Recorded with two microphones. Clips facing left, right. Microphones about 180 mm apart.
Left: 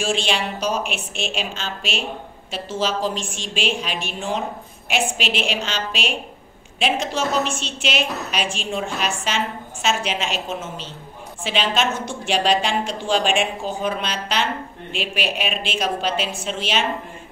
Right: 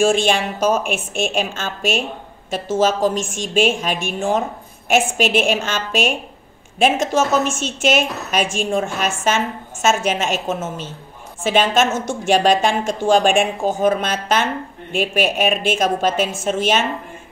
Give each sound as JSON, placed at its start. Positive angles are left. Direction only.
{"t": 0.0, "sound": "a woman's voice", "side_deg": -50}